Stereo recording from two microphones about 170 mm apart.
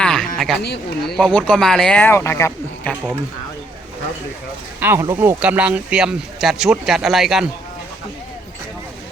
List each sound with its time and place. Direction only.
0.0 s a sound: 5° left (ahead or behind)
0.3 s speech: centre (ahead or behind)
4.8 s speech: 15° right (ahead or behind)
5.4 s speech: 5° right (ahead or behind)